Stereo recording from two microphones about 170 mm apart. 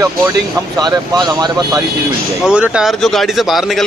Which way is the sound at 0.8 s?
25° right (ahead or behind).